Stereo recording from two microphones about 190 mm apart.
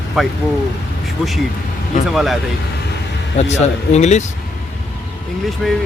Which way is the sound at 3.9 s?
35° left (ahead or behind).